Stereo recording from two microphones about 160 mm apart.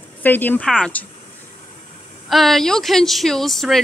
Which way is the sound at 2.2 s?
Centre (ahead or behind).